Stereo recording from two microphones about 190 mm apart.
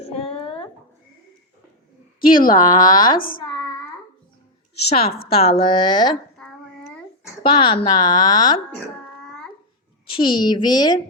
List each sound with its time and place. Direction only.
0.0 s a sound: 30° left (ahead or behind)
2.2 s a woman's voice: 50° left (ahead or behind)
2.5 s speech: 20° left (ahead or behind)
5.0 s a woman's voice: 55° left (ahead or behind)
5.3 s speech: 30° left (ahead or behind)
6.4 s child singing: 5° left (ahead or behind)
7.4 s speech: 25° left (ahead or behind)
10.1 s speech: 25° left (ahead or behind)